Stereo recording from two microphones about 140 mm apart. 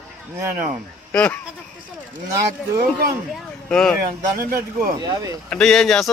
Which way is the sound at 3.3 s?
5° left (ahead or behind).